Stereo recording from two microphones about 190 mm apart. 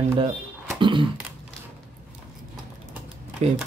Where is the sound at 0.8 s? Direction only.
25° right (ahead or behind).